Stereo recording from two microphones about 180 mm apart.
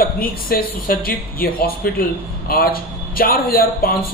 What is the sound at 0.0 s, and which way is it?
Speech, 55° left (ahead or behind).